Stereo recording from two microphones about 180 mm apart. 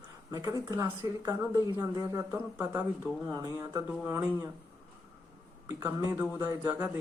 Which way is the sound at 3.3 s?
20° right (ahead or behind).